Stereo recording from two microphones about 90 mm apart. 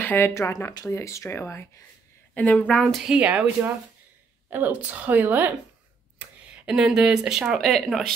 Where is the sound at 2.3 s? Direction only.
15° left (ahead or behind).